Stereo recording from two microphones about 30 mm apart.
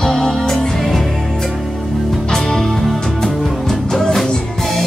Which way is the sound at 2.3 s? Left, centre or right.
Centre.